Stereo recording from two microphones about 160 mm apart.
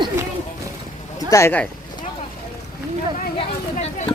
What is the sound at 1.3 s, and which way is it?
Speech, 15° left (ahead or behind).